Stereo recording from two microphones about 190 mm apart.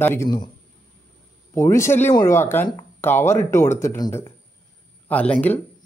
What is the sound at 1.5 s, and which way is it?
Speech, 15° left (ahead or behind).